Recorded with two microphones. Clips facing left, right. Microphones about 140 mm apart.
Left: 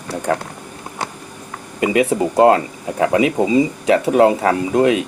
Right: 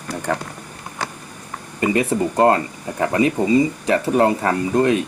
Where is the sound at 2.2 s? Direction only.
15° left (ahead or behind).